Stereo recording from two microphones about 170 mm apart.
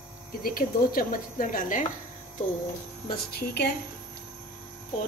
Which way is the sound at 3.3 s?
70° left (ahead or behind).